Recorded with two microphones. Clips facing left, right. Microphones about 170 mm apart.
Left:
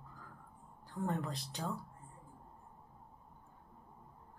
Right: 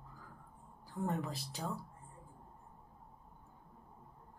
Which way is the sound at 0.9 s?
5° right (ahead or behind).